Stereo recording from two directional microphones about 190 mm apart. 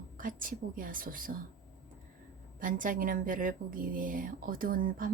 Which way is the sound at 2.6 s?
45° right (ahead or behind).